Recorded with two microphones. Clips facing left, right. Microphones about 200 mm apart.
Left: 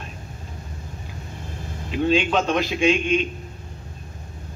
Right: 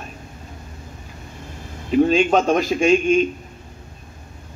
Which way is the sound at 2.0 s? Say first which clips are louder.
Right 4 dB; 45° right (ahead or behind).